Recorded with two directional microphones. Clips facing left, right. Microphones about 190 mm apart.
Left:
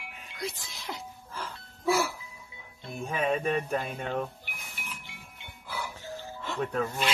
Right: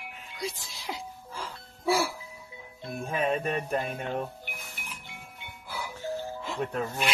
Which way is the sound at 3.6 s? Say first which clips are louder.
Right 1 dB; 10° right (ahead or behind).